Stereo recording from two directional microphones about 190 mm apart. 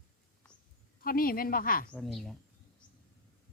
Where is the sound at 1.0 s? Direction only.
50° left (ahead or behind).